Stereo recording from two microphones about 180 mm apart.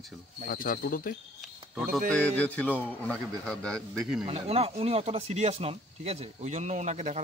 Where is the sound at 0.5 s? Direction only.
55° left (ahead or behind).